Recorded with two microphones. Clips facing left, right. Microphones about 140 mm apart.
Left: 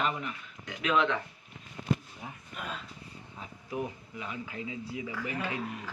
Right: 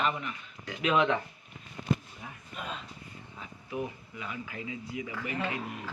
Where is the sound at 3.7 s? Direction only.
40° left (ahead or behind).